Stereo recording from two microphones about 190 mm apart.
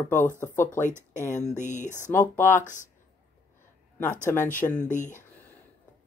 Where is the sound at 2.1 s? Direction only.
10° left (ahead or behind).